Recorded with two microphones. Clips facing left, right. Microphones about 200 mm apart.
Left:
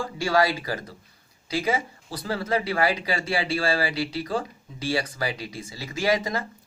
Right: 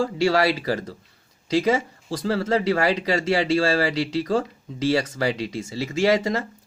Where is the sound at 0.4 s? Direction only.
35° right (ahead or behind).